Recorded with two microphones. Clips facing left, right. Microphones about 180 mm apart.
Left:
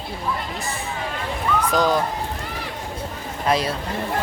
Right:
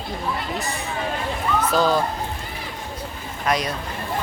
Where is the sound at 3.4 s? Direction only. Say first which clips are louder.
Left 2 dB; 30° left (ahead or behind).